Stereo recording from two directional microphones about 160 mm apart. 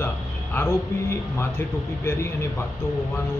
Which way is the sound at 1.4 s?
15° left (ahead or behind).